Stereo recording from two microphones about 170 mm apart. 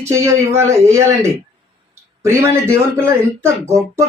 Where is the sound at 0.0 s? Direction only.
15° right (ahead or behind).